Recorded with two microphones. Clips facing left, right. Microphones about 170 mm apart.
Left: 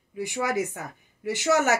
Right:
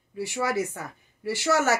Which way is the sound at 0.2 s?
15° left (ahead or behind).